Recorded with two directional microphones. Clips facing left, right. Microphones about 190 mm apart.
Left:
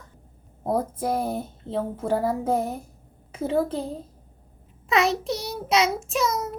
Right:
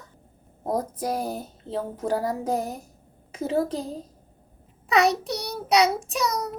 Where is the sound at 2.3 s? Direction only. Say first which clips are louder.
Left 2 dB; 35° right (ahead or behind).